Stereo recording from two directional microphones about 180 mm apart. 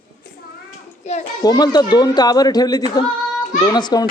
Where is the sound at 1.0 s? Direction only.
40° left (ahead or behind).